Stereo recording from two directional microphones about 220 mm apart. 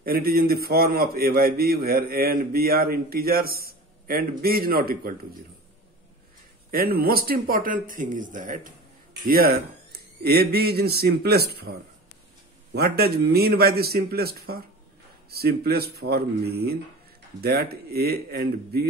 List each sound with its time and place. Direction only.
0.0 s a man's voice: 45° right (ahead or behind)
6.7 s a man's voice: 45° right (ahead or behind)
12.7 s a man's voice: 45° right (ahead or behind)